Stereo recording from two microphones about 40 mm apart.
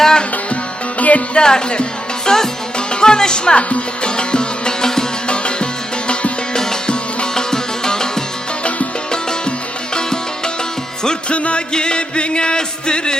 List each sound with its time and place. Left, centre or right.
0.0 s music: centre
0.5 s music: left
1.4 s music: centre
9.9 s music: centre
11.3 s music: left
11.7 s music: left